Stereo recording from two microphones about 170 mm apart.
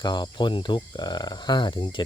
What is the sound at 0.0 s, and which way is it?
Speech, 25° left (ahead or behind).